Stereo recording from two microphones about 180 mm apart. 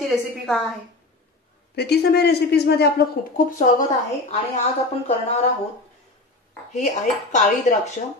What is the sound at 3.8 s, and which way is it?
Dishes, 40° left (ahead or behind).